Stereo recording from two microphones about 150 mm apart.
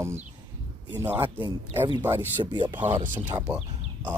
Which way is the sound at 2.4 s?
30° right (ahead or behind).